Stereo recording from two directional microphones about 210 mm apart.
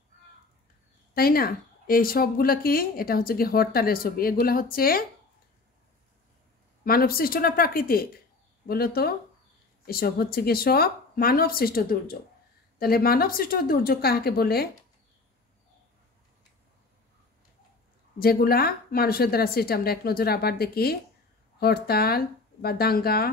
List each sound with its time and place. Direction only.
1.1 s a woman's voice: 45° left (ahead or behind)
6.8 s a woman's voice: 45° left (ahead or behind)
18.2 s a woman's voice: 45° left (ahead or behind)